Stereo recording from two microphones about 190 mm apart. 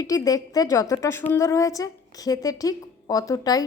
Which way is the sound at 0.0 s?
20° left (ahead or behind).